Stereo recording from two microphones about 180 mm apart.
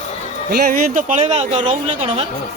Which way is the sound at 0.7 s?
45° right (ahead or behind).